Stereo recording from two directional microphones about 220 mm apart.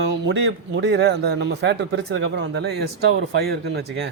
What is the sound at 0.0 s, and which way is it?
Speech, 55° right (ahead or behind).